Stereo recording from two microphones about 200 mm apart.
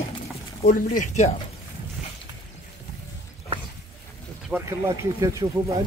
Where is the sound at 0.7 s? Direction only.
45° left (ahead or behind).